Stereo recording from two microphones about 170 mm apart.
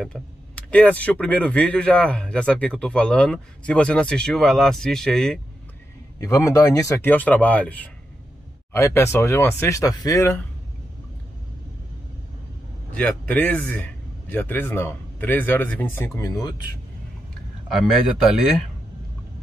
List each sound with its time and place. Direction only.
0.0 s speech: 5° left (ahead or behind)
6.1 s speech: 15° left (ahead or behind)
12.9 s speech: 5° left (ahead or behind)